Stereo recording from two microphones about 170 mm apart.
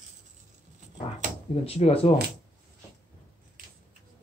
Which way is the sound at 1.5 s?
35° left (ahead or behind).